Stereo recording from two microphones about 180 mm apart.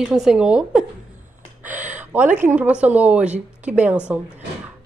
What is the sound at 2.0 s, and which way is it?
Speech, 10° right (ahead or behind).